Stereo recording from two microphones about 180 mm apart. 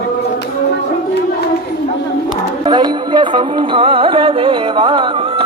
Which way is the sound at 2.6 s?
25° right (ahead or behind).